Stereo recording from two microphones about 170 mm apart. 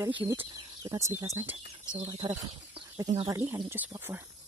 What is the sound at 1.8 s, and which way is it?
Speech, 35° right (ahead or behind).